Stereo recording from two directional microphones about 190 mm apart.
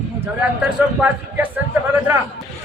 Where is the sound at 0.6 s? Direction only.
5° right (ahead or behind).